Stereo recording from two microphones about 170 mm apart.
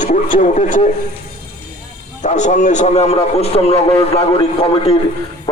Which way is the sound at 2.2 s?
45° left (ahead or behind).